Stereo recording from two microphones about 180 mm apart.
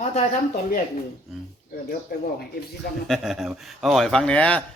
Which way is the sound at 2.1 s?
55° left (ahead or behind).